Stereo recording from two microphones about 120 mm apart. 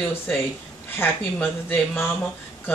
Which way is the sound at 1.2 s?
5° left (ahead or behind).